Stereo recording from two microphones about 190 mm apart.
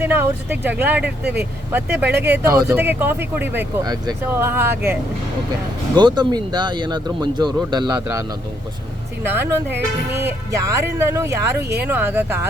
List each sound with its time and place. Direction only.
0.0 s speech: 10° right (ahead or behind)
6.0 s speech: 25° right (ahead or behind)
9.2 s speech: 10° right (ahead or behind)